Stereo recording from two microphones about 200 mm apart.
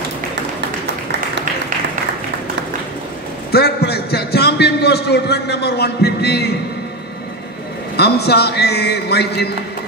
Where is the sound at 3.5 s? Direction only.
55° left (ahead or behind).